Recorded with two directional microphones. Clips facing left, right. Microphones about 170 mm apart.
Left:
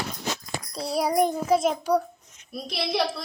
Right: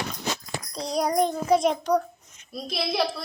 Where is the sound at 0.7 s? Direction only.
5° left (ahead or behind).